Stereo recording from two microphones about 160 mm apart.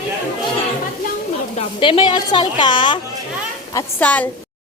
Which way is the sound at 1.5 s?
35° left (ahead or behind).